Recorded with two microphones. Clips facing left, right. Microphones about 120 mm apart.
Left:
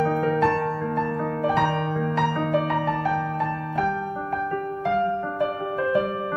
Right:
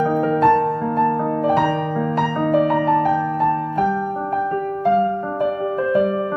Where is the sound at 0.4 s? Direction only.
20° right (ahead or behind).